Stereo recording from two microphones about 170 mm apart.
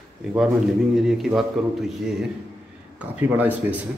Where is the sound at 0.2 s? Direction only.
5° right (ahead or behind).